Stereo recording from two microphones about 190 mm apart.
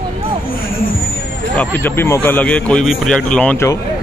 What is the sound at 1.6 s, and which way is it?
Speech, 10° left (ahead or behind).